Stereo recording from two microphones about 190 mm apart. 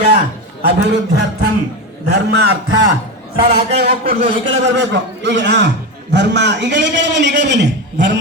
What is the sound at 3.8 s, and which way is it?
Speech, 55° right (ahead or behind).